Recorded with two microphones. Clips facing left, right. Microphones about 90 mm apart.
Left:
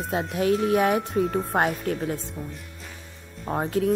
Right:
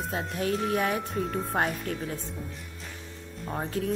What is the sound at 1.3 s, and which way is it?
Speech, 50° left (ahead or behind).